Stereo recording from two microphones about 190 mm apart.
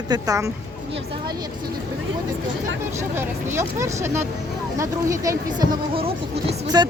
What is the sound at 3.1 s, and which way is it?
Speech, 15° right (ahead or behind).